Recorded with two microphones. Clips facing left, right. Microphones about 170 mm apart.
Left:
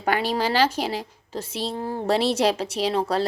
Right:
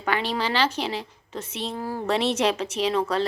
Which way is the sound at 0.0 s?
45° left (ahead or behind).